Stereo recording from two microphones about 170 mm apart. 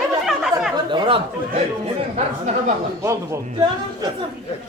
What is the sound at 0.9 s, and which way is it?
Chatter, 30° right (ahead or behind).